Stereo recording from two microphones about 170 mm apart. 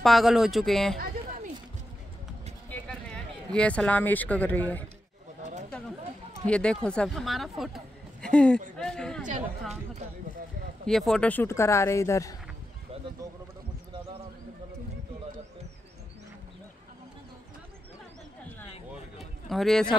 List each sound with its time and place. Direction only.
0.0 s speech: centre (ahead or behind)
2.9 s speech: 5° left (ahead or behind)
5.4 s a sound: 45° right (ahead or behind)
6.4 s speech: 5° left (ahead or behind)
10.9 s speech: centre (ahead or behind); by 12.4 s 20° left (ahead or behind)
13.2 s sheep: 20° right (ahead or behind)
18.9 s a sound: centre (ahead or behind)